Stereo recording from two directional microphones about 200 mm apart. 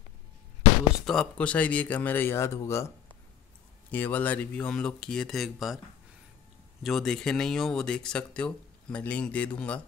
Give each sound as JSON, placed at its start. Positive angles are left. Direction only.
{"t": 1.0, "sound": "speech", "side_deg": 0}
{"t": 3.9, "sound": "speech", "side_deg": 10}
{"t": 6.8, "sound": "speech", "side_deg": 0}